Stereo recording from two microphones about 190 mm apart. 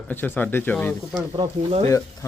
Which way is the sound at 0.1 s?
10° left (ahead or behind).